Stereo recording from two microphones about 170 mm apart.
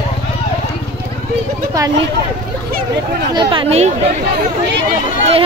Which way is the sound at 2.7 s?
65° right (ahead or behind).